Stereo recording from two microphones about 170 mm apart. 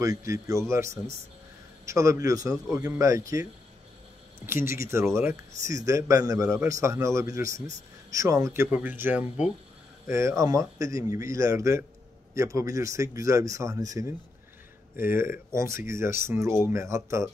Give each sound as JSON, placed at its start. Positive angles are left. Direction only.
{"t": 0.0, "sound": "a man's voice", "side_deg": -20}
{"t": 4.5, "sound": "a man's voice", "side_deg": -15}